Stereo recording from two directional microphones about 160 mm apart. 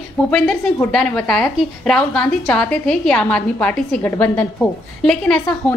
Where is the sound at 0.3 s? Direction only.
5° left (ahead or behind).